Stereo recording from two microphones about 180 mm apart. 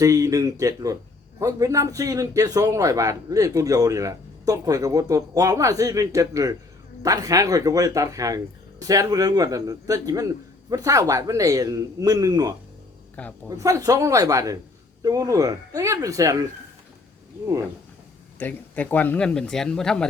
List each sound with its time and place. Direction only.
0.0 s a man's voice: 20° right (ahead or behind)
13.2 s speech: 10° left (ahead or behind)
13.5 s a man's voice: 20° right (ahead or behind)
18.3 s speech: 10° left (ahead or behind)